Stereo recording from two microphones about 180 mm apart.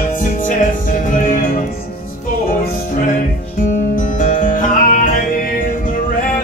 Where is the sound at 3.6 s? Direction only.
50° left (ahead or behind).